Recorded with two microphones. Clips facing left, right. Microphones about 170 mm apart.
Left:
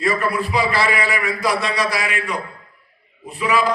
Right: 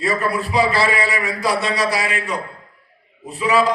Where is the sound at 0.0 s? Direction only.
35° right (ahead or behind).